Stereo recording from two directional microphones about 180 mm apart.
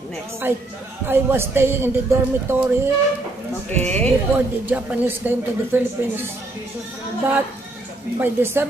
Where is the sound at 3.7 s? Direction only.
5° left (ahead or behind).